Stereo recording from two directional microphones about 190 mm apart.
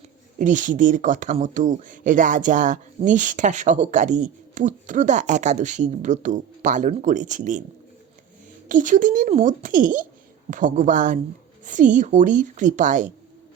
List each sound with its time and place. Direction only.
0.3 s speech: 40° right (ahead or behind)
8.7 s speech: 45° right (ahead or behind)